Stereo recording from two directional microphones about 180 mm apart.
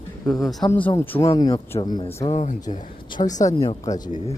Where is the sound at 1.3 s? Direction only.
20° left (ahead or behind).